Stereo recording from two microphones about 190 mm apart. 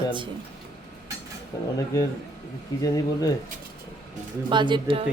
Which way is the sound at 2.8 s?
20° left (ahead or behind).